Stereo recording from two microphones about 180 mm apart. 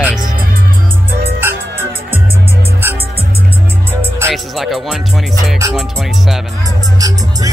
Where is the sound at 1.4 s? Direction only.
10° right (ahead or behind).